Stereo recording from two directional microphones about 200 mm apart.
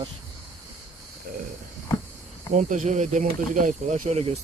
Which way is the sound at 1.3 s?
45° right (ahead or behind).